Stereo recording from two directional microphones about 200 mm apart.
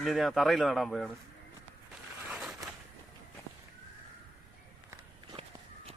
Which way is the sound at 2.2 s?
Centre (ahead or behind).